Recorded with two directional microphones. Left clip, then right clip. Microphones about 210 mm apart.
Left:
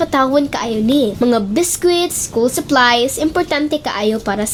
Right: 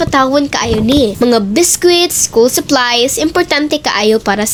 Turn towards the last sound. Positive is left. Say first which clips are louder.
# right 6 dB
turn(degrees=-10)  # may be behind; listen again after turning